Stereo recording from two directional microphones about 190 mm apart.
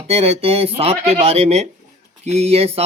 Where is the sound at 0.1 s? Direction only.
35° right (ahead or behind).